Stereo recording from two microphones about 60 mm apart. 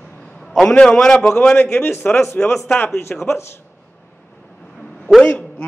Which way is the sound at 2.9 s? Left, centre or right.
Left.